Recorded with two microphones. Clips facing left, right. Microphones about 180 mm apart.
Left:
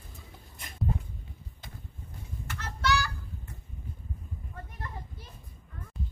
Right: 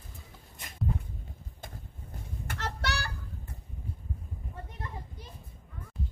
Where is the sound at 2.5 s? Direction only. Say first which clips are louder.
Left 5 dB; 70° right (ahead or behind).